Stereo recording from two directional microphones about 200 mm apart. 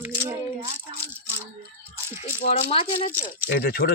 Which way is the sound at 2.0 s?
10° right (ahead or behind).